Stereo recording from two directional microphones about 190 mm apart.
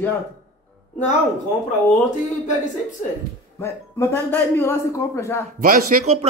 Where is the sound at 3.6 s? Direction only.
10° left (ahead or behind).